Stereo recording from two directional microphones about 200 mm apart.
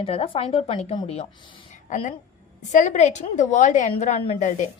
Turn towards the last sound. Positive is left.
turn(degrees=35)  # may be behind; listen again after turning